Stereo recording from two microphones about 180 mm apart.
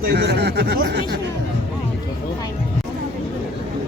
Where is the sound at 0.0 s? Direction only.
65° right (ahead or behind).